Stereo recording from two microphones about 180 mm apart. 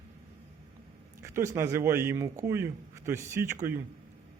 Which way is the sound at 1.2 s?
15° right (ahead or behind).